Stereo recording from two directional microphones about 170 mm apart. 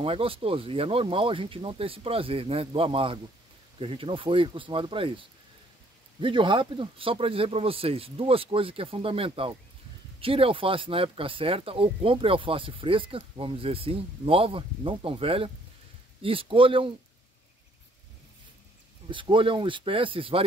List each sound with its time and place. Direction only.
0.0 s speech: 35° right (ahead or behind)
6.2 s speech: 30° right (ahead or behind)
19.0 s speech: 30° right (ahead or behind)